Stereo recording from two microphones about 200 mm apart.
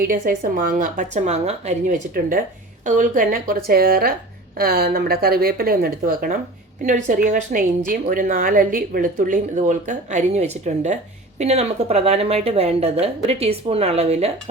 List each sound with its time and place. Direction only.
0.0 s a woman's voice: 45° right (ahead or behind)